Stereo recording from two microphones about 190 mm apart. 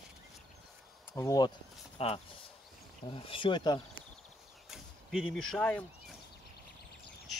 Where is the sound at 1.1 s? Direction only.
20° left (ahead or behind).